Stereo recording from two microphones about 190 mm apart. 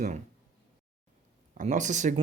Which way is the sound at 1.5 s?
40° right (ahead or behind).